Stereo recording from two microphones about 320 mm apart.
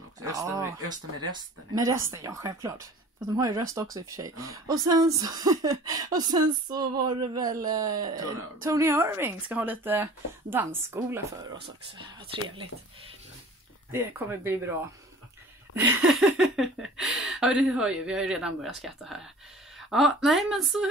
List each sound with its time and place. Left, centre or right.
0.2 s speech: centre
13.9 s speech: centre
15.7 s speech: centre